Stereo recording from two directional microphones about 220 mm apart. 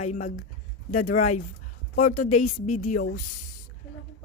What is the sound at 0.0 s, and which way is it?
A woman's voice, 35° left (ahead or behind).